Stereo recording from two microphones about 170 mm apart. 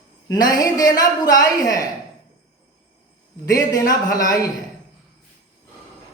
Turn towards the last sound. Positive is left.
turn(degrees=20)  # may be behind; listen again after turning